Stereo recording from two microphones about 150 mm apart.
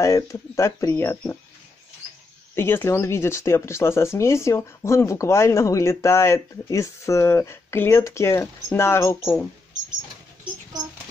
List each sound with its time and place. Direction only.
0.0 s speech: 20° left (ahead or behind)
2.5 s speech: 15° left (ahead or behind)